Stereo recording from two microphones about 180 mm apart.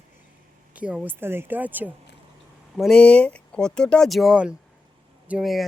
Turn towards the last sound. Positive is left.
turn(degrees=0)  # may be behind; listen again after turning